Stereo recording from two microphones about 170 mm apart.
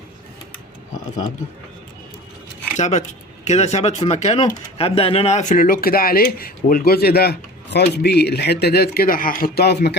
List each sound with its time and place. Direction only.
0.9 s speech: 50° left (ahead or behind)
2.7 s speech: 45° left (ahead or behind); by 9.9 s 75° left (ahead or behind)